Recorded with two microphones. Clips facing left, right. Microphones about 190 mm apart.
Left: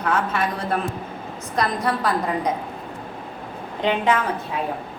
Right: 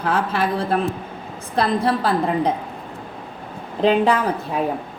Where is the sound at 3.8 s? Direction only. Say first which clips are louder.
Right 4 dB; 35° right (ahead or behind).